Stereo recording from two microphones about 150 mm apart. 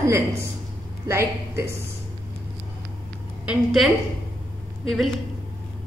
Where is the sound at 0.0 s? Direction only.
20° right (ahead or behind).